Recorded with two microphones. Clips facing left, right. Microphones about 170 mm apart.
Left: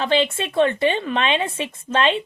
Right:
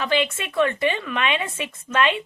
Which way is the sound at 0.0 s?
30° left (ahead or behind).